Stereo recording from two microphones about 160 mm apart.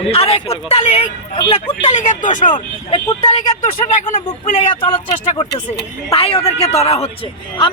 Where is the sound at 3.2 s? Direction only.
45° left (ahead or behind).